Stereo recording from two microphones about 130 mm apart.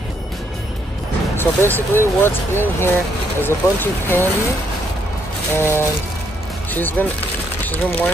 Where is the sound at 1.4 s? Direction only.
15° left (ahead or behind).